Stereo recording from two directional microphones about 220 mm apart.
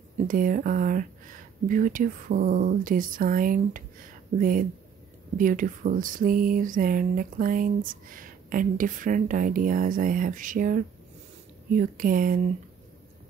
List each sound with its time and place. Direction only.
0.3 s speech: 40° right (ahead or behind)